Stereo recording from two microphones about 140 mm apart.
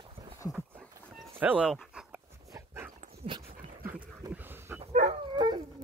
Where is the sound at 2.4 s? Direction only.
20° right (ahead or behind).